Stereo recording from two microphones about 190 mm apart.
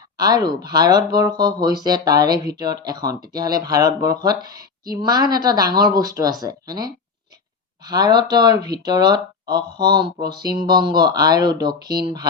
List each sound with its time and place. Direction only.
0.2 s speech: 20° right (ahead or behind)